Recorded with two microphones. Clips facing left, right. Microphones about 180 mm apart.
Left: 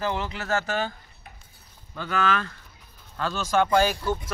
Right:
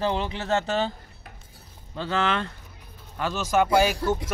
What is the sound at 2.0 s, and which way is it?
Speech, 25° right (ahead or behind).